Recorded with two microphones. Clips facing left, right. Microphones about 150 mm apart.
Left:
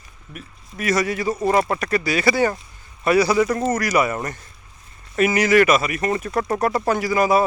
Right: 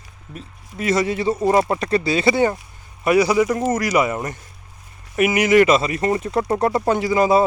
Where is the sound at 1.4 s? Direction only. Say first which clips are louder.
Right 1 dB; 15° right (ahead or behind).